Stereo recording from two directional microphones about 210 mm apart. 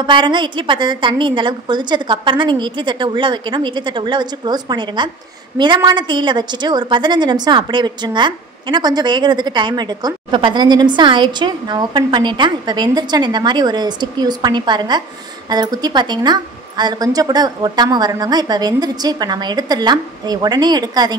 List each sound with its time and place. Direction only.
0.0 s a woman's voice: 20° right (ahead or behind)